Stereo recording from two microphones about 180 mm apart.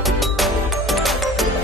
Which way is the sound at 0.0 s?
Centre (ahead or behind).